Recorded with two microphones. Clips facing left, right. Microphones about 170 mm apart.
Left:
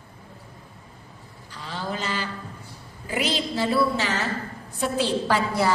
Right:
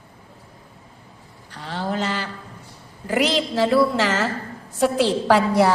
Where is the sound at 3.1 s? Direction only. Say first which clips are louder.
Right 5 dB; 85° right.